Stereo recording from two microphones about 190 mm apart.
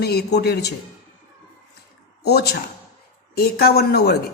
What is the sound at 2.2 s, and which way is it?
Speech, 55° left (ahead or behind).